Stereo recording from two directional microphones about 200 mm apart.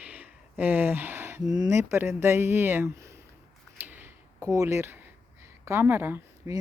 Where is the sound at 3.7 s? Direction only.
10° right (ahead or behind).